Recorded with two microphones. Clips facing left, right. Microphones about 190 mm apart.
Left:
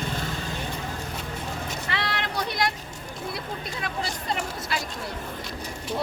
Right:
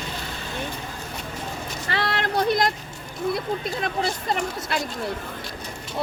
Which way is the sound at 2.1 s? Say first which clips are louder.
Right 7 dB; 50° right (ahead or behind).